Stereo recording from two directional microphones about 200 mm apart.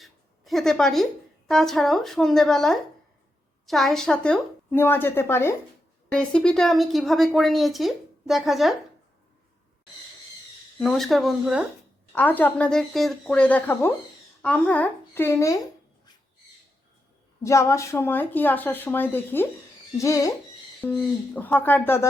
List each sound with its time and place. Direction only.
0.0 s a sound: centre (ahead or behind)
1.5 s speech: centre (ahead or behind)
10.8 s speech: centre (ahead or behind)
12.1 s a child's voice: 10° left (ahead or behind)
17.4 s speech: 15° left (ahead or behind)